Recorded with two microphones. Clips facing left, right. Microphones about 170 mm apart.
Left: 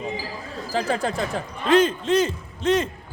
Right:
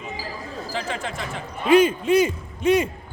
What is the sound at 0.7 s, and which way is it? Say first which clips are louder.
Speech: left 6 dB; 40° left (ahead or behind).